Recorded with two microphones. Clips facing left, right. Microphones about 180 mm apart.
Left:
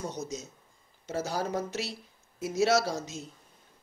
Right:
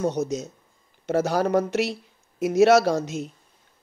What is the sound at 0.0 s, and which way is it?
Speech, 65° right (ahead or behind).